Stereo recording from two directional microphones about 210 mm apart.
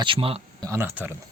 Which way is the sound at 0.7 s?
10° right (ahead or behind).